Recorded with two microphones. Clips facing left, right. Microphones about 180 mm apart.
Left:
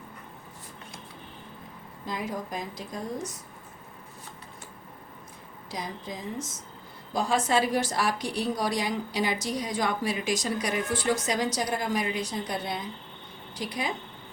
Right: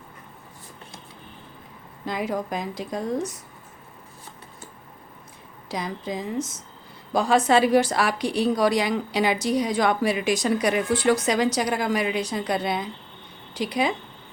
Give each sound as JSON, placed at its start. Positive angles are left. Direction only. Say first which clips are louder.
{"t": 2.0, "sound": "a woman's voice", "louder": "right 6 dB", "side_deg": -75}
{"t": 5.7, "sound": "a woman's voice", "louder": "right 7 dB", "side_deg": -75}